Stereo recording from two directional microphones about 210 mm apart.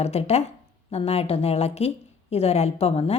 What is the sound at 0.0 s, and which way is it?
A woman's voice, 30° left (ahead or behind).